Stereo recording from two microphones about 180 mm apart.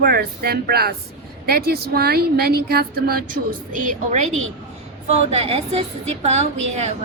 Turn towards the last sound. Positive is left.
turn(degrees=-40)  # may be behind; listen again after turning